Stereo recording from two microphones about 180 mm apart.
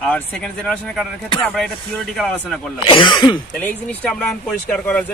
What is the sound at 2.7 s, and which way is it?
Speech, 30° left (ahead or behind).